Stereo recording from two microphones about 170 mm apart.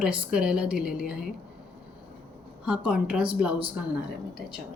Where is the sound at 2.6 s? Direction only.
5° right (ahead or behind).